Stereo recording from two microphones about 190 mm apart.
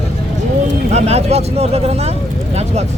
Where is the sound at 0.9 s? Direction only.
35° right (ahead or behind).